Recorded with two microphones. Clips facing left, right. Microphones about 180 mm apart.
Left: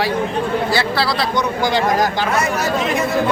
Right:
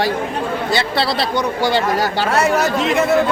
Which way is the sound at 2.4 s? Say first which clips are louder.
Right 6 dB; 65° right (ahead or behind).